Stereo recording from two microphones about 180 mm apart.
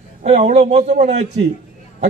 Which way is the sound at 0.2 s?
35° right (ahead or behind).